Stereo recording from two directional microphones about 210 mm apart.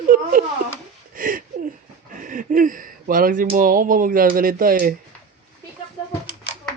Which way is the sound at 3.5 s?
40° right (ahead or behind).